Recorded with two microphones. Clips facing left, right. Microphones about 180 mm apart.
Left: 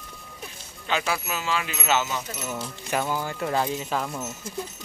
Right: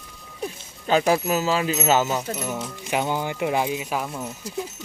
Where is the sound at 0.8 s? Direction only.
40° right (ahead or behind).